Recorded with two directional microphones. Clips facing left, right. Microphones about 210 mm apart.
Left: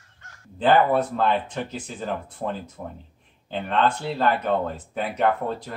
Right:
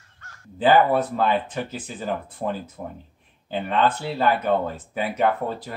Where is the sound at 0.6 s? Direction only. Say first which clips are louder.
Right 1 dB; 5° right (ahead or behind).